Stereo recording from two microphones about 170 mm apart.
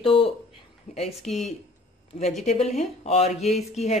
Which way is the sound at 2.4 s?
40° left (ahead or behind).